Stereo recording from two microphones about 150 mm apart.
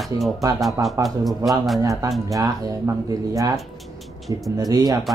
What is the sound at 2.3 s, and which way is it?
Speech, 20° right (ahead or behind).